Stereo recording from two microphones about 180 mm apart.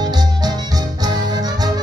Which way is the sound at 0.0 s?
20° right (ahead or behind).